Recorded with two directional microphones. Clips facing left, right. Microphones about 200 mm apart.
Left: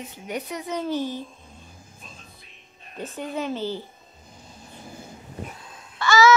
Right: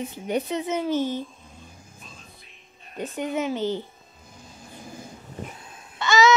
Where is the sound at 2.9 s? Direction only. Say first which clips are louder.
Right 3 dB; 15° right (ahead or behind).